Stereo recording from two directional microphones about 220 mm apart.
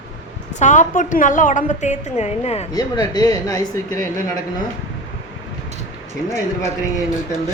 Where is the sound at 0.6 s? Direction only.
35° left (ahead or behind).